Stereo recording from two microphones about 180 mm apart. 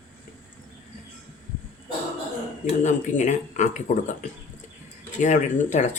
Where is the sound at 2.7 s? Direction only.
45° left (ahead or behind).